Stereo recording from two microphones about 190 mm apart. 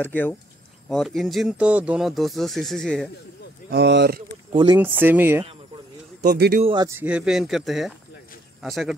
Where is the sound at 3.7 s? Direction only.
60° right (ahead or behind).